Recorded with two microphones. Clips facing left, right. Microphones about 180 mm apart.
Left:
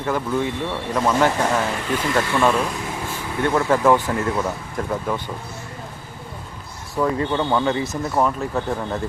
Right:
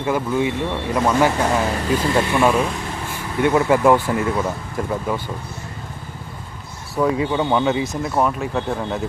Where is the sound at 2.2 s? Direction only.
10° right (ahead or behind).